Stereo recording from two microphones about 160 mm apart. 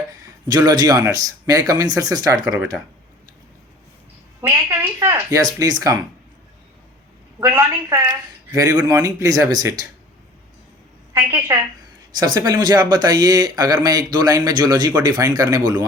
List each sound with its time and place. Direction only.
0.4 s a man's voice: 25° right (ahead or behind)
5.0 s a man's voice: 15° right (ahead or behind)
7.3 s a woman's voice: 15° right (ahead or behind)
11.1 s a woman's voice: 15° right (ahead or behind)